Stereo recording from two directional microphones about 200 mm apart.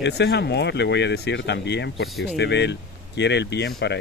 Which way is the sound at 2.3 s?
60° left (ahead or behind).